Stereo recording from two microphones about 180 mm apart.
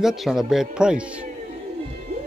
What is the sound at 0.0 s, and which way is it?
Speech, centre (ahead or behind).